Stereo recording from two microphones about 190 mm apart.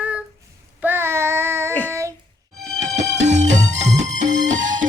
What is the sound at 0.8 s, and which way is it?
Child singing, 10° right (ahead or behind).